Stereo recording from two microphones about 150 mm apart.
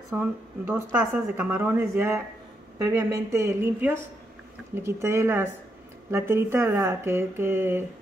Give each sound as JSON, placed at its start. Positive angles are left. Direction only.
{"t": 0.1, "sound": "speech", "side_deg": -15}